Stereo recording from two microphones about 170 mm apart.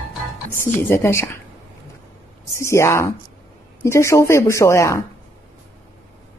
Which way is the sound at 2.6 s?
15° left (ahead or behind).